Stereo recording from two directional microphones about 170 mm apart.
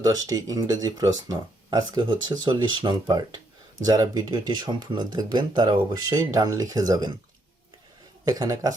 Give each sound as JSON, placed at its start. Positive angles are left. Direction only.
{"t": 0.0, "sound": "speech", "side_deg": -20}
{"t": 8.2, "sound": "speech", "side_deg": -20}